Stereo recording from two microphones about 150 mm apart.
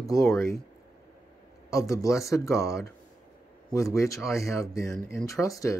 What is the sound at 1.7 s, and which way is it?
Speech, 20° left (ahead or behind).